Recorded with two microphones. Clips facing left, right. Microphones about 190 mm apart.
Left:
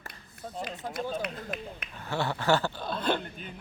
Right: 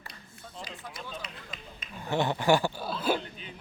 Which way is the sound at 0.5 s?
50° left (ahead or behind).